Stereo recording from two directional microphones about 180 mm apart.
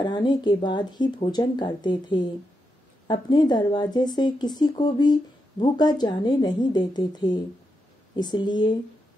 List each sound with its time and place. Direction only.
0.0 s speech: 25° left (ahead or behind)